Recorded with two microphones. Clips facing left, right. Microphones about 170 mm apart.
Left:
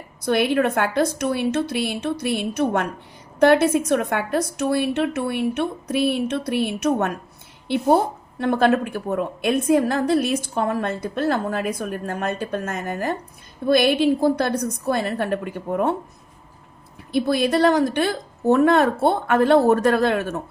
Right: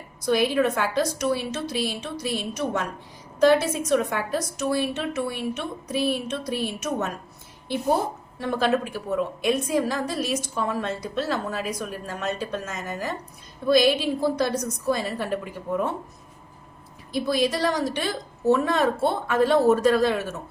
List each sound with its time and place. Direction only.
0.3 s a woman's voice: 60° left (ahead or behind)
17.1 s a woman's voice: 60° left (ahead or behind)